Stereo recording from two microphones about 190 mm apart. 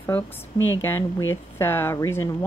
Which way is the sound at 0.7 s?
10° left (ahead or behind).